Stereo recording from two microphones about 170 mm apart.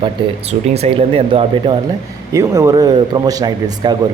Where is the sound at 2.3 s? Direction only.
20° right (ahead or behind).